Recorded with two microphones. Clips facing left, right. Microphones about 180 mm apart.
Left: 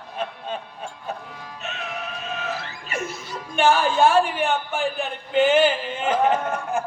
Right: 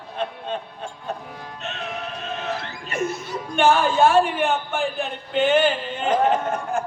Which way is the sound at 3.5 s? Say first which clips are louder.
Right 1 dB; centre (ahead or behind).